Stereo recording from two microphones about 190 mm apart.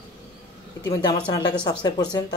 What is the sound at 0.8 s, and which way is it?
Speech, 20° left (ahead or behind).